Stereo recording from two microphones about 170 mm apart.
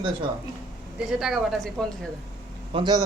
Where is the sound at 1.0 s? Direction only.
5° right (ahead or behind).